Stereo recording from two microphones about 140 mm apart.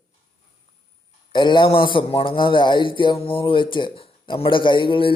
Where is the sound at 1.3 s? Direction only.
35° left (ahead or behind).